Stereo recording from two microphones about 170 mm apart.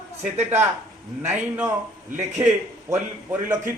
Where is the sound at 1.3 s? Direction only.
10° right (ahead or behind).